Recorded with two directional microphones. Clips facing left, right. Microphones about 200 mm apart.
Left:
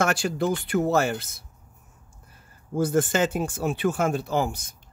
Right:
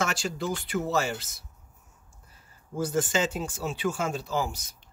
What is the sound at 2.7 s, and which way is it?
Speech, 55° left (ahead or behind).